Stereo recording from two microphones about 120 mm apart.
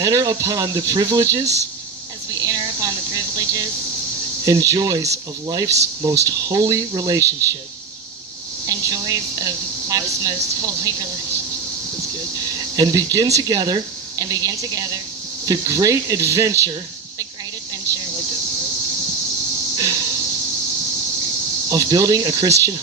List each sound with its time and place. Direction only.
0.0 s speech: 30° right (ahead or behind)
2.4 s a sound: 30° right (ahead or behind)
4.4 s speech: 30° right (ahead or behind)
8.6 s a woman's voice: 30° right (ahead or behind)
12.5 s speech: 35° right (ahead or behind)
19.7 s a sound: 30° right (ahead or behind)
21.7 s speech: 30° right (ahead or behind)